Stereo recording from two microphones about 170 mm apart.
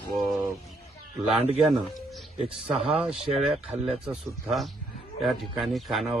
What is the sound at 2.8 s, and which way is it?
Speech, 35° right (ahead or behind).